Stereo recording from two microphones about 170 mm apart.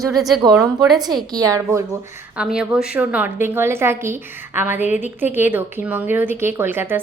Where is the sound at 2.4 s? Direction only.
5° right (ahead or behind).